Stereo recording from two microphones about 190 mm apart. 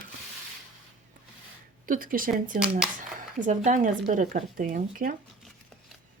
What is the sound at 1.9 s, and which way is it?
Speech, 45° right (ahead or behind).